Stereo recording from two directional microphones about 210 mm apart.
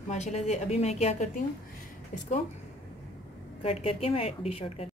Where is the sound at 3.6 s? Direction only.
30° left (ahead or behind).